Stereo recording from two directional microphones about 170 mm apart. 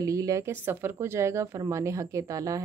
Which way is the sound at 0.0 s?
20° right (ahead or behind).